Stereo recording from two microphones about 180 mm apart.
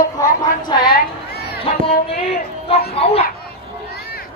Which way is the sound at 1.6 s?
35° left (ahead or behind).